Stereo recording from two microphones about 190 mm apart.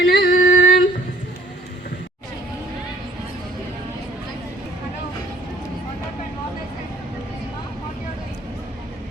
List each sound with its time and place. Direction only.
0.0 s female singing: 55° left (ahead or behind)